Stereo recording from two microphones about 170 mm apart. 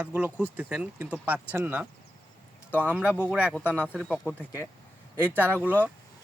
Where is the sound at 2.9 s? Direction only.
5° right (ahead or behind).